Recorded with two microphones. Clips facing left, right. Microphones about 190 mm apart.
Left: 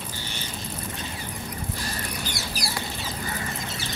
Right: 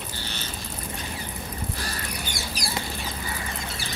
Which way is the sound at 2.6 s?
Centre (ahead or behind).